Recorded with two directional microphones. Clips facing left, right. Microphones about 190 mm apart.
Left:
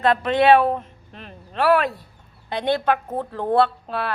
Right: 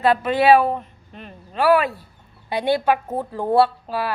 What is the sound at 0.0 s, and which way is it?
A woman's voice, 5° right (ahead or behind).